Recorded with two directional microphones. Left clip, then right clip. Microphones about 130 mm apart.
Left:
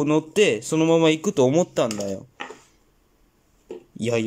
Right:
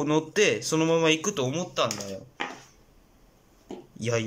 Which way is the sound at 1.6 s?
60° left (ahead or behind).